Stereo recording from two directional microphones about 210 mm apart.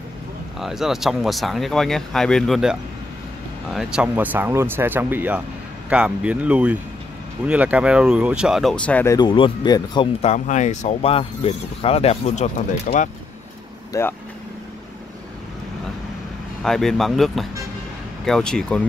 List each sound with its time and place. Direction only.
0.6 s speech: centre (ahead or behind); by 10.0 s 20° left (ahead or behind)
10.2 s speech: 35° left (ahead or behind)
13.9 s speech: 15° left (ahead or behind)
16.6 s speech: centre (ahead or behind)